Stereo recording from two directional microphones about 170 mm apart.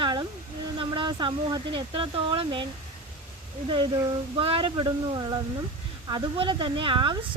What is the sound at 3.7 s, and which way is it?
Speech, 30° right (ahead or behind).